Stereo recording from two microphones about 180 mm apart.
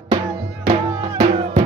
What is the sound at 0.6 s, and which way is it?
Music, 30° right (ahead or behind).